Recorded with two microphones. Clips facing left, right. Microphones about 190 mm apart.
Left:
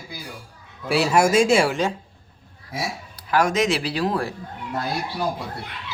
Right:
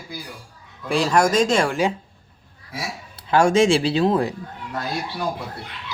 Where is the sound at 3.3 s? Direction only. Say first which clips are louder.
Right 4 dB; 30° right (ahead or behind).